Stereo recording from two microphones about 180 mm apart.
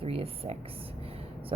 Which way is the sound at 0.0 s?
30° right (ahead or behind).